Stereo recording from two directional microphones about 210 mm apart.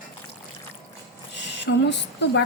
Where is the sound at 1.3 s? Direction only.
55° left (ahead or behind).